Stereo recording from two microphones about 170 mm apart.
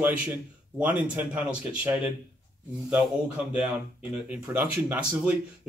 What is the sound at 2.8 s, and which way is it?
Speech, 5° right (ahead or behind).